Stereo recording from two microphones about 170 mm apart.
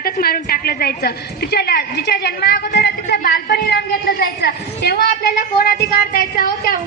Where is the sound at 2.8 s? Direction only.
75° left (ahead or behind).